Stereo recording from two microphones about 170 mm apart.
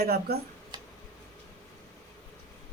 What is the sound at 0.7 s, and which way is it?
Tick-tock, 25° right (ahead or behind).